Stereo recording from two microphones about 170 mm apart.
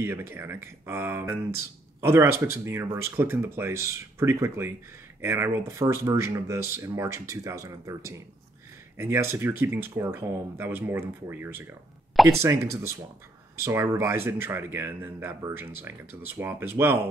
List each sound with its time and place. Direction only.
0.0 s speech: 15° right (ahead or behind)